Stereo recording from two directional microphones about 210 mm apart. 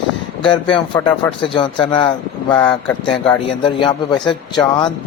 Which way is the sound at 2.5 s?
5° left (ahead or behind).